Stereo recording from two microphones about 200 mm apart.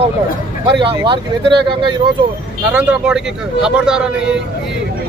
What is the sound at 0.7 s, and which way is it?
Speech, 25° right (ahead or behind).